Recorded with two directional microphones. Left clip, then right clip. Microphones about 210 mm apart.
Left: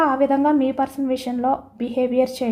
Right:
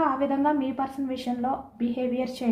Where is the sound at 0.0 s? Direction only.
55° left (ahead or behind).